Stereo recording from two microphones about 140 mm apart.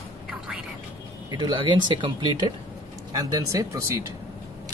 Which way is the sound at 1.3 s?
35° right (ahead or behind).